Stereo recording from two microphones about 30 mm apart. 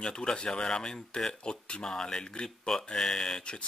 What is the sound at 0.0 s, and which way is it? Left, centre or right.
Speech, left.